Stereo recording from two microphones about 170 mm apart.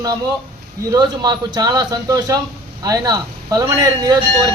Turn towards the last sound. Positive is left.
turn(degrees=-20)  # may be behind; listen again after turning